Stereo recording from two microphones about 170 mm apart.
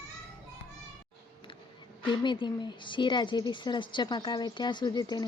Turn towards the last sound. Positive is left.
turn(degrees=20)  # may be behind; listen again after turning